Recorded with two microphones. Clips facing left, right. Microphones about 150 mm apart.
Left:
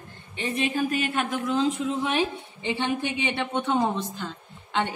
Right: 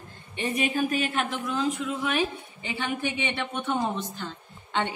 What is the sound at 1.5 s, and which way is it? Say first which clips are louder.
A woman's voice: left 3 dB; 25° left (ahead or behind).